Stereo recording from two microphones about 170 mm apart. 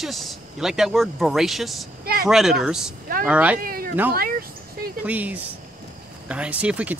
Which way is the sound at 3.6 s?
60° right (ahead or behind).